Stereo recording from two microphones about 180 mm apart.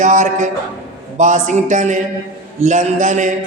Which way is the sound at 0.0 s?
45° right (ahead or behind).